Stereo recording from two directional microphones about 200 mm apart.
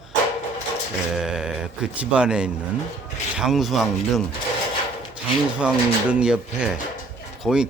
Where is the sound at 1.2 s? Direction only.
5° right (ahead or behind).